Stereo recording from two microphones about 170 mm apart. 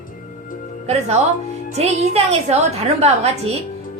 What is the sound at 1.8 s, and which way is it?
A woman's voice, 40° right (ahead or behind).